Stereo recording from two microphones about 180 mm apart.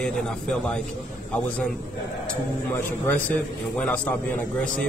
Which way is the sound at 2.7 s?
10° left (ahead or behind).